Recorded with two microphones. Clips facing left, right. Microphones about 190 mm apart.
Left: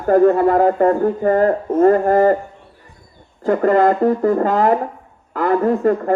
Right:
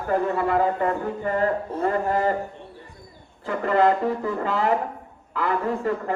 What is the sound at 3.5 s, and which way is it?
Speech, 45° left (ahead or behind).